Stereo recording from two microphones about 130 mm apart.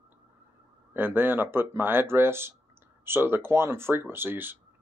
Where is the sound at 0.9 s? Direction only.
15° right (ahead or behind).